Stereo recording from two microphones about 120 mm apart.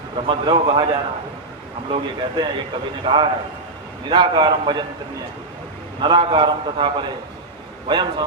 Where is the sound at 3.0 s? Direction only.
45° right (ahead or behind).